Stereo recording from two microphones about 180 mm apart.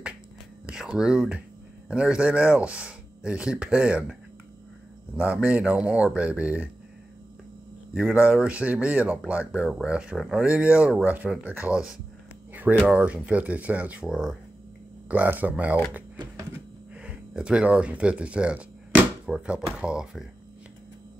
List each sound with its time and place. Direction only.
0.7 s speech: 5° right (ahead or behind)
7.9 s speech: 5° right (ahead or behind)
16.2 s printer: 15° right (ahead or behind)
16.9 s speech: 5° right (ahead or behind)